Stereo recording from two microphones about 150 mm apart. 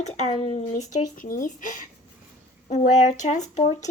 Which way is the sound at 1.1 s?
60° left (ahead or behind).